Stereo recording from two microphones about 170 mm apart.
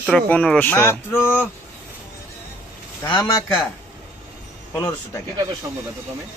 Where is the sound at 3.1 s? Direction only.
25° left (ahead or behind).